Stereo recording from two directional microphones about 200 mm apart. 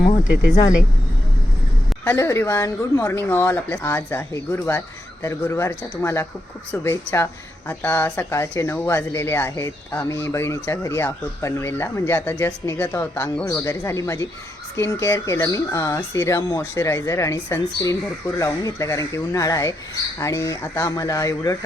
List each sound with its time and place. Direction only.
2.0 s speech: 15° left (ahead or behind)